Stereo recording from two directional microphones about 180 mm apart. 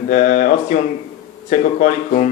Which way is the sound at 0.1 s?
45° left (ahead or behind).